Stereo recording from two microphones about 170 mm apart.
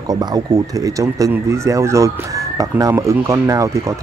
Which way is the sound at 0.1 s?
25° right (ahead or behind).